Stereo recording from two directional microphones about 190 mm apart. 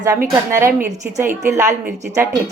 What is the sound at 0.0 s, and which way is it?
A woman's voice, 15° right (ahead or behind).